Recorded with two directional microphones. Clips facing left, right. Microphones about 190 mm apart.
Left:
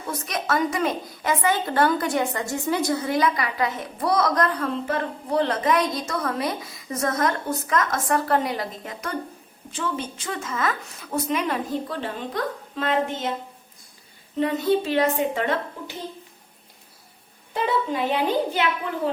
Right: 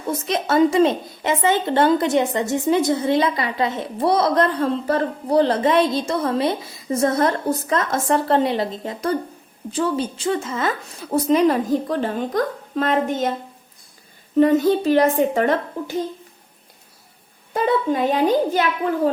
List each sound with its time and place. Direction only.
0.1 s a woman's voice: 25° right (ahead or behind); by 13.3 s 45° right (ahead or behind)
14.3 s a child's voice: 45° right (ahead or behind)
17.5 s a child's voice: 45° right (ahead or behind)